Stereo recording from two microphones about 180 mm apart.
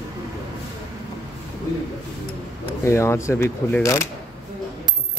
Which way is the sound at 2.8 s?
15° left (ahead or behind).